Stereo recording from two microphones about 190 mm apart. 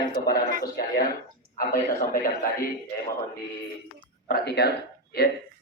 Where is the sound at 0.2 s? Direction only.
55° left (ahead or behind).